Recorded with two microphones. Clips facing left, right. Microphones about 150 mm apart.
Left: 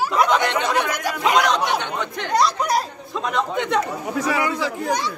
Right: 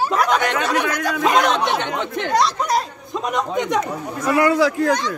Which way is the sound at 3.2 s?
15° right (ahead or behind).